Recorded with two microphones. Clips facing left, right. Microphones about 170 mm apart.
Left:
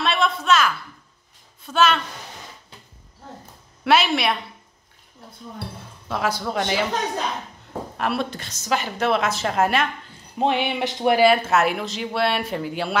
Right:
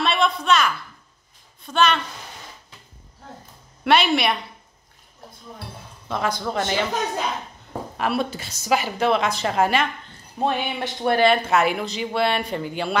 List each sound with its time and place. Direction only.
0.0 s a sound: centre (ahead or behind)
1.7 s a woman's voice: 5° left (ahead or behind)
3.8 s a woman's voice: centre (ahead or behind)
6.0 s a woman's voice: 5° left (ahead or behind)
8.0 s a woman's voice: centre (ahead or behind)
10.4 s speech: 20° left (ahead or behind)
11.1 s a woman's voice: 5° left (ahead or behind)